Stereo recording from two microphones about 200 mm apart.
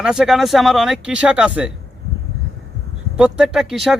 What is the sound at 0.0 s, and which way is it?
Speech, 5° right (ahead or behind).